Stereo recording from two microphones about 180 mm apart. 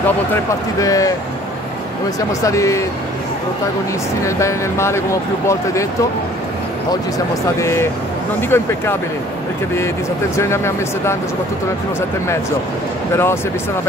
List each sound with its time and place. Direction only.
0.3 s speech: 20° left (ahead or behind)
2.1 s speech: 15° left (ahead or behind)
4.2 s speech: 15° left (ahead or behind)
7.5 s speech: 15° left (ahead or behind)
10.3 s speech: 15° left (ahead or behind)
13.1 s speech: 15° left (ahead or behind)